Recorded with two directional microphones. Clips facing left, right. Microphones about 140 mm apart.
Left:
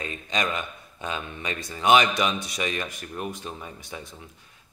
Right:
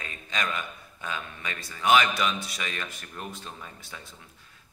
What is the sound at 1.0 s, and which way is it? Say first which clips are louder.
Speech: left 4 dB; 20° left (ahead or behind).